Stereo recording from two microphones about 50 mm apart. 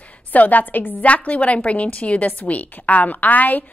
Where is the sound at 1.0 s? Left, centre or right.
Left.